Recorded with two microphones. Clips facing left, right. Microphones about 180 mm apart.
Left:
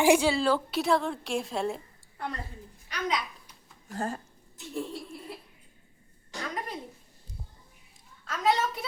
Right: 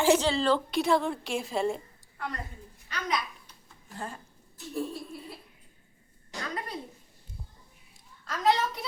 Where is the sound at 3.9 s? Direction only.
40° left (ahead or behind).